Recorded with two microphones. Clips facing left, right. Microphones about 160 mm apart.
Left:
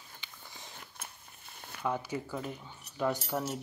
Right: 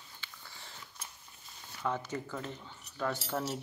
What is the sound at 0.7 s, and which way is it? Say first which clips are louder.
Biting: left 2 dB; 55° left (ahead or behind).